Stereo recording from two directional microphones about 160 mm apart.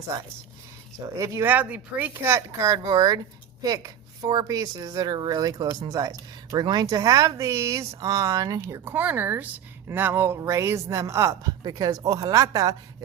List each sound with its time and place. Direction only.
1.2 s speech: 20° right (ahead or behind)